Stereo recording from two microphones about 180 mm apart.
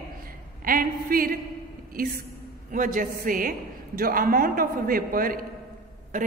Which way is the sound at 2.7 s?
50° right (ahead or behind).